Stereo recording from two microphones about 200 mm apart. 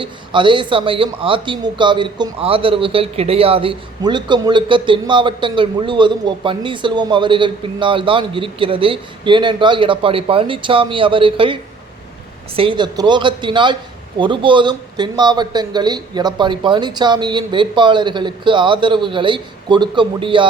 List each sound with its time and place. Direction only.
0.0 s speech: 25° right (ahead or behind)